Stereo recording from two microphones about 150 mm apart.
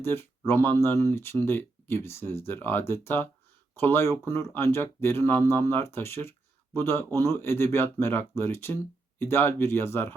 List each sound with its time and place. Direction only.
0.0 s speech: 15° left (ahead or behind)